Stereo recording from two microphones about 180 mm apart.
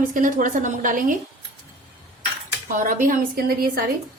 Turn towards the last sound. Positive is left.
turn(degrees=-55)  # may be behind; listen again after turning